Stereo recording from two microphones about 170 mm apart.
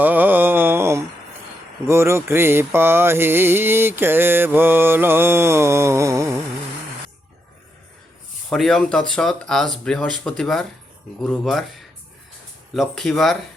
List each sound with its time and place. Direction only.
0.0 s mantra: 10° right (ahead or behind)
8.4 s speech: 5° left (ahead or behind)
12.7 s speech: centre (ahead or behind)